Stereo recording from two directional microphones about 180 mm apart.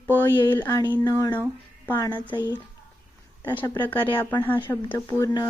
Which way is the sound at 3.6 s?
10° left (ahead or behind).